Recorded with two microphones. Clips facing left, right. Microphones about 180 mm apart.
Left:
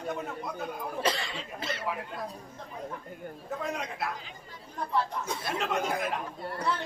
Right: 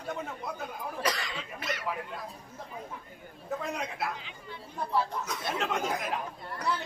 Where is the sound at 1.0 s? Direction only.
25° left (ahead or behind).